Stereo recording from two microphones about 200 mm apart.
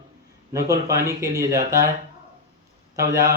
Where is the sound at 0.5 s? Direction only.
15° right (ahead or behind).